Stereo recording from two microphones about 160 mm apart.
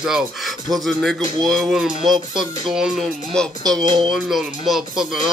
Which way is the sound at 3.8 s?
30° right (ahead or behind).